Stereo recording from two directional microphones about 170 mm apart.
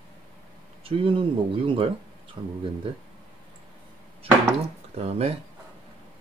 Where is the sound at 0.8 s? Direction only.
35° right (ahead or behind).